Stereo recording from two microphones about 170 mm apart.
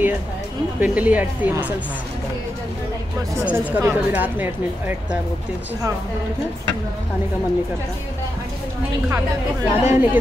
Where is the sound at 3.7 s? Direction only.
10° right (ahead or behind).